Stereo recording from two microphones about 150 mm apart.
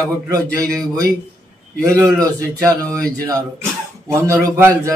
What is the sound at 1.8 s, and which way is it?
A man's voice, 20° right (ahead or behind).